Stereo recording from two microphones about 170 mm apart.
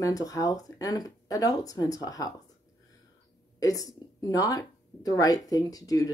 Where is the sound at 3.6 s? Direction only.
20° left (ahead or behind).